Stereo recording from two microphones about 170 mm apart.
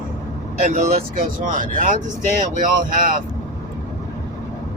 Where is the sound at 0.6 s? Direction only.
55° right (ahead or behind).